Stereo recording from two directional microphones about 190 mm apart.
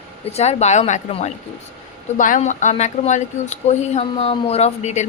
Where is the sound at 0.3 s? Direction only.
35° left (ahead or behind).